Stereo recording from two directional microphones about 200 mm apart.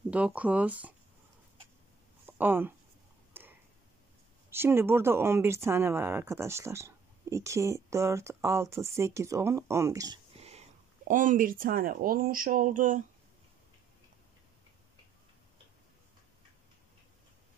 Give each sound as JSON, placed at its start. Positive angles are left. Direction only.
{"t": 0.1, "sound": "speech", "side_deg": -5}
{"t": 2.2, "sound": "speech", "side_deg": -10}
{"t": 3.3, "sound": "tick-tock", "side_deg": -10}
{"t": 4.5, "sound": "speech", "side_deg": -10}
{"t": 11.1, "sound": "speech", "side_deg": -40}